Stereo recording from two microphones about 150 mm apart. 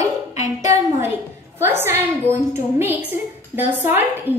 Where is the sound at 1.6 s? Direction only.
15° right (ahead or behind).